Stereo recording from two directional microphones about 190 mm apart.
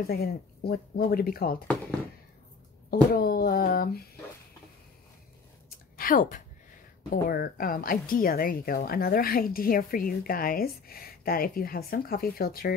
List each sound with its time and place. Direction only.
0.0 s a woman's voice: 55° left (ahead or behind)
2.9 s a woman's voice: 50° left (ahead or behind)
5.9 s a woman's voice: 45° left (ahead or behind)